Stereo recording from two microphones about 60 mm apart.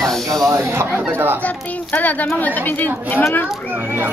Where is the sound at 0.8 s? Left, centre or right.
Right.